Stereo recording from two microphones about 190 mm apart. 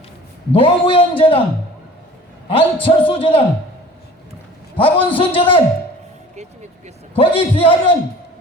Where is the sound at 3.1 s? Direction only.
30° left (ahead or behind).